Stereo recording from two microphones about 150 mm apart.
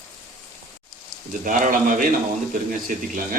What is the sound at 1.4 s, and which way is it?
Speech, 60° right (ahead or behind).